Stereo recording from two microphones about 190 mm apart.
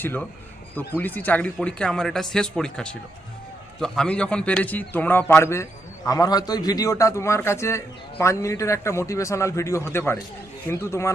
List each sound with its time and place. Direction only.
0.0 s a man's voice: 10° left (ahead or behind)